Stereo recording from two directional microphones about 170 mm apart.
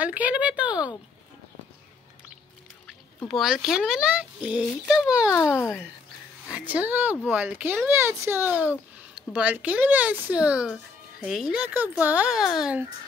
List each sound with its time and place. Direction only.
0.0 s a sound: 10° right (ahead or behind)
3.3 s speech: centre (ahead or behind)
5.3 s speech: 15° left (ahead or behind)
6.4 s speech: 10° right (ahead or behind)